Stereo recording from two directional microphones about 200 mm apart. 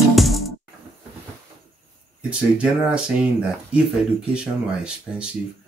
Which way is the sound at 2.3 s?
5° right (ahead or behind).